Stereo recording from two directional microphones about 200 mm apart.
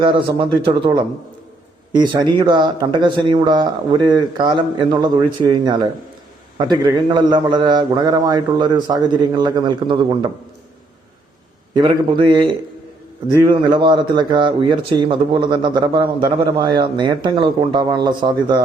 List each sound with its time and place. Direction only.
0.0 s speech: 25° right (ahead or behind)
11.7 s speech: 20° right (ahead or behind)